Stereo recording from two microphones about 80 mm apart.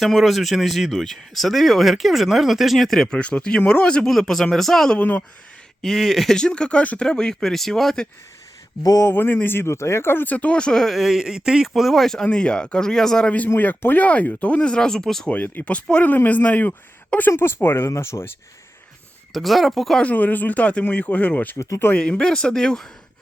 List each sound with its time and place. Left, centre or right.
0.0 s speech: centre
4.9 s speech: left
5.8 s speech: centre
8.8 s speech: left
9.0 s speech: left; by 11.7 s centre
11.7 s speech: centre
13.6 s speech: left; by 15.3 s centre
15.3 s speech: left
19.3 s speech: centre
20.0 s speech: centre
21.9 s speech: centre